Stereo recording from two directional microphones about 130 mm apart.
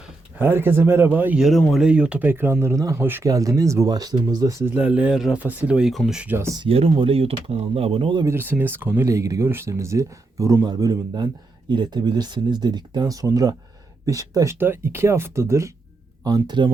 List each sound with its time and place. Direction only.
0.3 s speech: 15° right (ahead or behind)
3.2 s speech: 25° right (ahead or behind)
4.7 s speech: 10° right (ahead or behind)
6.6 s speech: 45° right (ahead or behind)
8.2 s speech: 20° right (ahead or behind)